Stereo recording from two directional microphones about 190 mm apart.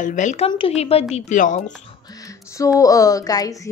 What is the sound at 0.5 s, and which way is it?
Speech, 30° left (ahead or behind).